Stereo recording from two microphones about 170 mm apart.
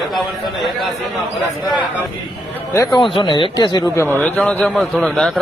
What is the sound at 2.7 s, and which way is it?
Speech, 20° left (ahead or behind).